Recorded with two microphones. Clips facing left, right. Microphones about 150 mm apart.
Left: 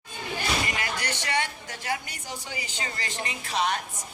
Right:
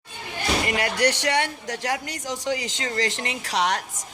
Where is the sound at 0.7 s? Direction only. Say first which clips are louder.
Right 9 dB; 65° right (ahead or behind).